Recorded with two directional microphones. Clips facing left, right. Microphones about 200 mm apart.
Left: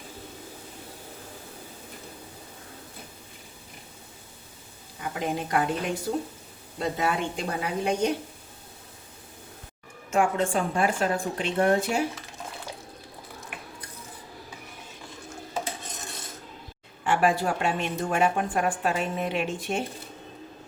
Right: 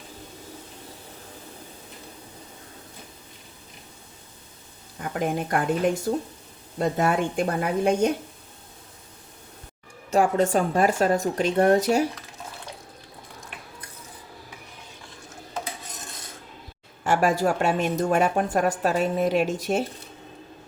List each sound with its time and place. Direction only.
4.9 s a woman's voice: 50° right (ahead or behind)
10.1 s a woman's voice: 40° right (ahead or behind)
17.0 s a woman's voice: 45° right (ahead or behind)